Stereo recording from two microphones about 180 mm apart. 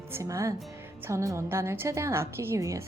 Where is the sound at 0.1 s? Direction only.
15° right (ahead or behind).